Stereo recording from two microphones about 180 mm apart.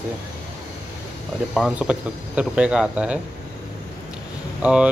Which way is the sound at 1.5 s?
5° right (ahead or behind).